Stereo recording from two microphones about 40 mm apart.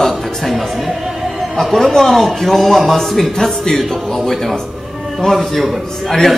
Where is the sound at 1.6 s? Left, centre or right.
Centre.